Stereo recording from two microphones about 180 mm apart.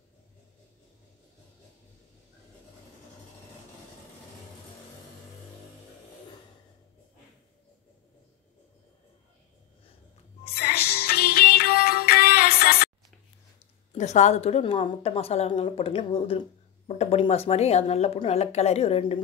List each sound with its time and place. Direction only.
10.5 s music: 60° left (ahead or behind)
13.9 s a woman's voice: 40° left (ahead or behind)